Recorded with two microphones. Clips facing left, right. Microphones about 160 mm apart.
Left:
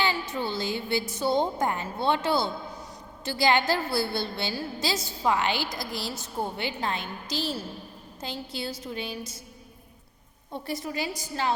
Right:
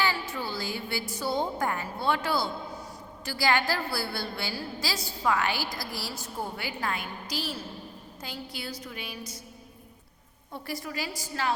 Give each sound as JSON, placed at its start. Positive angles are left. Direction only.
{"t": 0.0, "sound": "a woman's voice", "side_deg": 20}
{"t": 10.5, "sound": "a woman's voice", "side_deg": 25}